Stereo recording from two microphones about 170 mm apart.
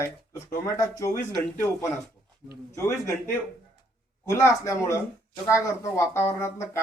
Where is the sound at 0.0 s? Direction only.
15° left (ahead or behind).